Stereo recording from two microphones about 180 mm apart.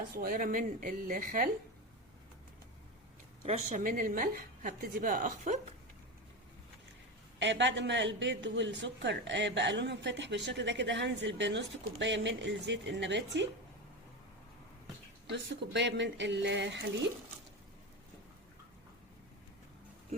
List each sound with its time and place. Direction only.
0.1 s a woman's voice: 55° right (ahead or behind)
3.4 s a woman's voice: 40° right (ahead or behind)
7.3 s speech: 80° right
15.3 s speech: 75° right (ahead or behind)